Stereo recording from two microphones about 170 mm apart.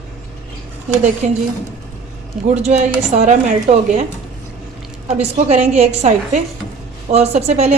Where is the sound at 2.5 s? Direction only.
40° right (ahead or behind).